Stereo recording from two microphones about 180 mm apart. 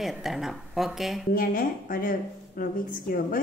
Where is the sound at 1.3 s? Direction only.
55° left (ahead or behind).